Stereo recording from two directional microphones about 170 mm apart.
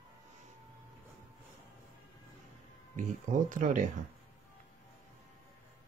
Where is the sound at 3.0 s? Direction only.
50° right (ahead or behind).